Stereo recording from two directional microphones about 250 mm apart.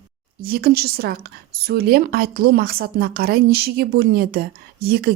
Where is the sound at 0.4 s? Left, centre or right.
Right.